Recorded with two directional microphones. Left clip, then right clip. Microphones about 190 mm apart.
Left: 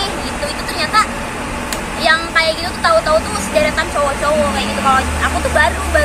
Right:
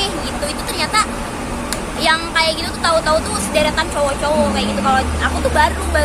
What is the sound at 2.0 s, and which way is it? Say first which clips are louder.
Speech: left 2 dB; 35° right (ahead or behind).